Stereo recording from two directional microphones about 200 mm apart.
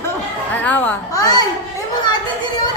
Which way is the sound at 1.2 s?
20° left (ahead or behind).